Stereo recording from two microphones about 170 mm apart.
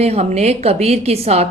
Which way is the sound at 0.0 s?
40° right (ahead or behind).